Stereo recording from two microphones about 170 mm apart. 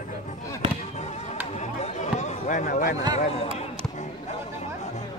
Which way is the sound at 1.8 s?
45° left (ahead or behind).